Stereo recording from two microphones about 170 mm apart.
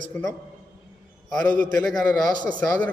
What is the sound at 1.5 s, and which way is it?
Speech, 50° right (ahead or behind).